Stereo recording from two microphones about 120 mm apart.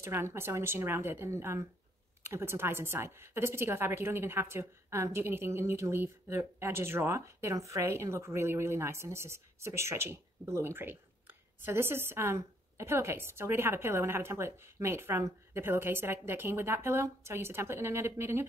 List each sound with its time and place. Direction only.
0.0 s a woman's voice: 20° right (ahead or behind)